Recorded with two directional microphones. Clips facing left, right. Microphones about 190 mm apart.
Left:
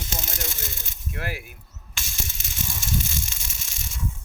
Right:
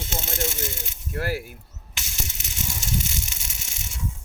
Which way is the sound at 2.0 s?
20° right (ahead or behind).